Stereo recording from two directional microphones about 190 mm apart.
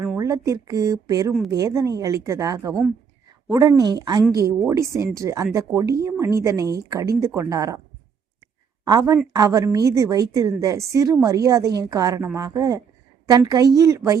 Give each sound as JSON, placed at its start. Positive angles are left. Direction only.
{"t": 0.2, "sound": "a woman's voice", "side_deg": -20}
{"t": 8.8, "sound": "a woman's voice", "side_deg": -20}